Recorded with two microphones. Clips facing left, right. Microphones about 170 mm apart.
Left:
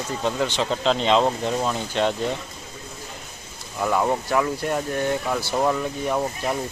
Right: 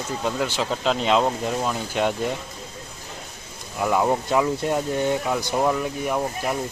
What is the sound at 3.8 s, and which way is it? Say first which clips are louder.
Speech: right 1 dB; 10° right (ahead or behind).